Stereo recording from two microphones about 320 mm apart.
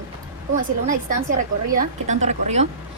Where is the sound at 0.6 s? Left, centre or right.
Right.